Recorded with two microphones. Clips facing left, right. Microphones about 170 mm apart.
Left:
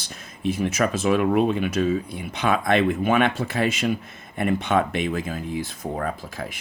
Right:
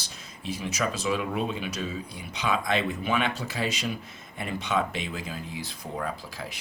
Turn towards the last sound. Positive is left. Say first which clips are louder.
# left 5 dB
turn(degrees=50)  # may be behind; listen again after turning